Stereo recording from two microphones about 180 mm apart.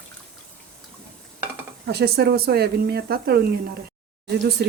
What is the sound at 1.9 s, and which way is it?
Speech, 65° right (ahead or behind).